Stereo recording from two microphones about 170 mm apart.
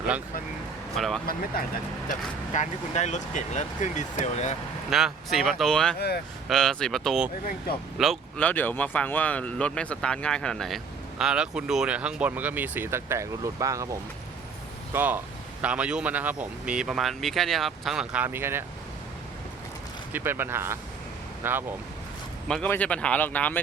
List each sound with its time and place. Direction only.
0.9 s speech: centre (ahead or behind)
1.6 s speech: 60° left (ahead or behind)
2.0 s speech: 45° left (ahead or behind)
4.9 s speech: centre (ahead or behind)
8.4 s speech: 10° left (ahead or behind); by 18.6 s 15° right (ahead or behind)
20.1 s speech: 10° right (ahead or behind)
22.4 s speech: 5° left (ahead or behind)